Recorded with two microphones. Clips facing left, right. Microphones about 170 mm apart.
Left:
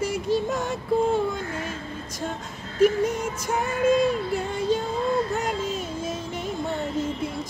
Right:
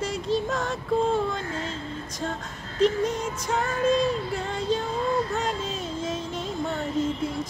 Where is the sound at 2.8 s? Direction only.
10° left (ahead or behind).